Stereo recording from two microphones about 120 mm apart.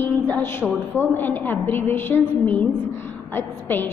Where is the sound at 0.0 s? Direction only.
20° left (ahead or behind).